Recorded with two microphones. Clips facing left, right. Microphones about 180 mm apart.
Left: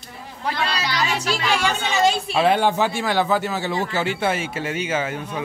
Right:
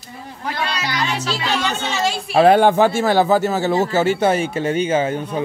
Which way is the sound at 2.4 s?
50° right (ahead or behind).